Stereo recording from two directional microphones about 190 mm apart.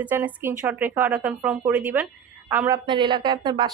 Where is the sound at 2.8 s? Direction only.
25° right (ahead or behind).